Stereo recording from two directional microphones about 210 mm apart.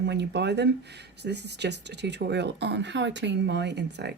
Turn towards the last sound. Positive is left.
turn(degrees=-55)  # may be behind; listen again after turning